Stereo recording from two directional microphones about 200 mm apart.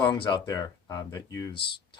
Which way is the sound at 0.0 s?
20° left (ahead or behind).